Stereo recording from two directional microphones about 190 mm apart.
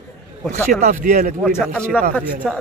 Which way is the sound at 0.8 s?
40° right (ahead or behind).